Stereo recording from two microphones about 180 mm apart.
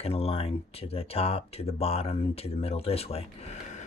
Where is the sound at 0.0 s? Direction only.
35° left (ahead or behind).